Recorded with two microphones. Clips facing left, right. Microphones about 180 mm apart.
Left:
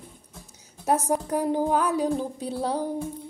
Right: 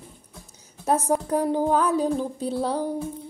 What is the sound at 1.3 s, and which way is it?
Speech, 15° left (ahead or behind).